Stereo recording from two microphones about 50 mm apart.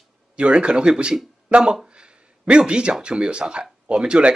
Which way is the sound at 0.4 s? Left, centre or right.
Right.